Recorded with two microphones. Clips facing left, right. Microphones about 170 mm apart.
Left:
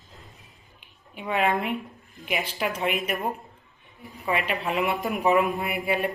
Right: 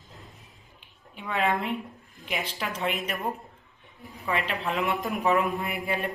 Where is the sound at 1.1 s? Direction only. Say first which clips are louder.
Left 2 dB; 15° left (ahead or behind).